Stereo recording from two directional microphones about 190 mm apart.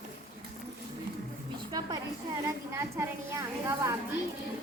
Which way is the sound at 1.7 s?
20° right (ahead or behind).